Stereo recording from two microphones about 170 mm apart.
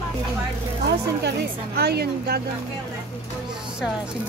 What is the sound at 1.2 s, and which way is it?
A woman's voice, 70° right (ahead or behind).